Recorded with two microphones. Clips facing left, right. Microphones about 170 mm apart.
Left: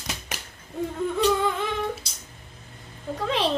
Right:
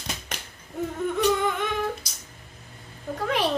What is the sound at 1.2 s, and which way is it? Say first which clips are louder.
Humming: left 1 dB; 30° left (ahead or behind).